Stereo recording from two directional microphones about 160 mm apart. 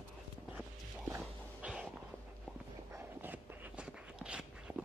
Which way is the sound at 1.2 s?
5° right (ahead or behind).